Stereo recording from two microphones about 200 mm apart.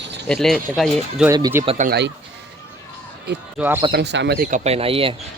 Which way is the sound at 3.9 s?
55° right (ahead or behind).